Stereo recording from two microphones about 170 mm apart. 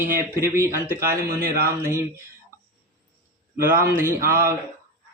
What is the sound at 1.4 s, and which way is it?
Speech, 60° right (ahead or behind).